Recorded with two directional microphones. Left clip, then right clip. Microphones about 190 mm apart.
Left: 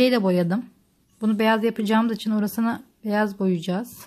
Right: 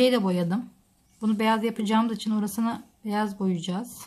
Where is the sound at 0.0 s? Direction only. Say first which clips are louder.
Left 3 dB; 30° left (ahead or behind).